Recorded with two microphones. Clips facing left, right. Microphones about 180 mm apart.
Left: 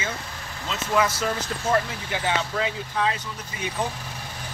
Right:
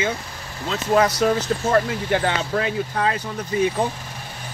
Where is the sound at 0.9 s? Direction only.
40° right (ahead or behind).